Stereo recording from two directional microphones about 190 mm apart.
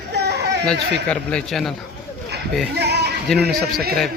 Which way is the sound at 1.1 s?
5° left (ahead or behind).